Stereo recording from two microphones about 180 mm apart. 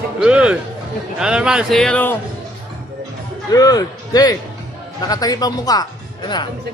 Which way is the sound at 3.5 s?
20° left (ahead or behind).